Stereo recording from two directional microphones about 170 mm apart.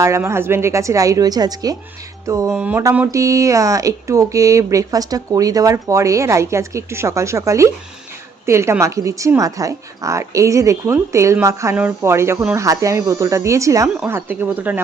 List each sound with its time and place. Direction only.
0.0 s a woman's voice: 15° right (ahead or behind)
2.5 s a woman's voice: 10° right (ahead or behind)